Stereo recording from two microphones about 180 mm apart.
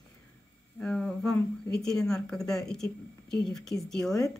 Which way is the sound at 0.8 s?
5° left (ahead or behind).